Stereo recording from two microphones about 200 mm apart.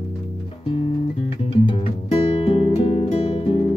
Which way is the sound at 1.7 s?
30° left (ahead or behind).